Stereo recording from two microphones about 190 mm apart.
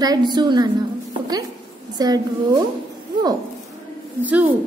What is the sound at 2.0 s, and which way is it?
Speech, 20° right (ahead or behind).